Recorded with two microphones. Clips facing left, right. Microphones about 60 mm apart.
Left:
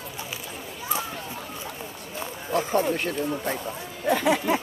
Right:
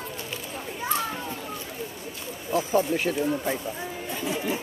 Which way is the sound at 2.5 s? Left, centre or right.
Left.